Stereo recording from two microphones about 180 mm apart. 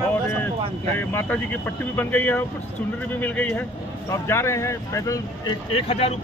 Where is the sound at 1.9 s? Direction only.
10° left (ahead or behind).